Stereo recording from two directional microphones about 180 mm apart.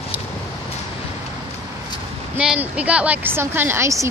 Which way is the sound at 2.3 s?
5° right (ahead or behind).